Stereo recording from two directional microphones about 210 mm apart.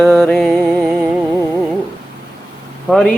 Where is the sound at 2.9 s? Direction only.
Centre (ahead or behind).